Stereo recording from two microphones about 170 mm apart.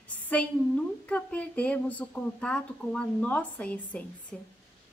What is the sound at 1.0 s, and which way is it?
A woman's voice, 10° left (ahead or behind).